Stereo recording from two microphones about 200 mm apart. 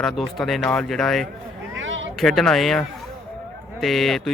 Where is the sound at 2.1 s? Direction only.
Centre (ahead or behind).